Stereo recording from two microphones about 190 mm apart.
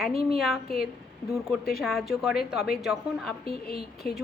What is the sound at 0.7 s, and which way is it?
Speech, 55° left (ahead or behind).